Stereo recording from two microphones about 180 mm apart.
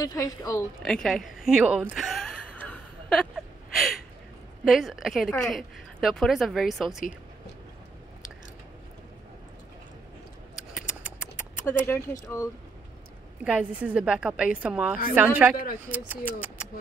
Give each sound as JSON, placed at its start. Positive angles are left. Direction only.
{"t": 0.0, "sound": "a woman's voice", "side_deg": 20}
{"t": 0.8, "sound": "a sound", "side_deg": 5}
{"t": 4.6, "sound": "a woman's voice", "side_deg": 0}
{"t": 10.9, "sound": "a sound", "side_deg": -5}
{"t": 11.6, "sound": "speech", "side_deg": 15}
{"t": 13.4, "sound": "a woman's voice", "side_deg": -5}